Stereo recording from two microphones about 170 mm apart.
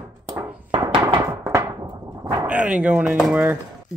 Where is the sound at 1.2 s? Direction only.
15° right (ahead or behind).